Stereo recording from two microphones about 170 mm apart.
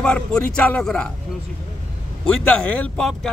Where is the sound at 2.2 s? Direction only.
5° left (ahead or behind).